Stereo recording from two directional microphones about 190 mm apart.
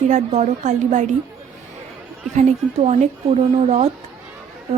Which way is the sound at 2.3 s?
40° right (ahead or behind).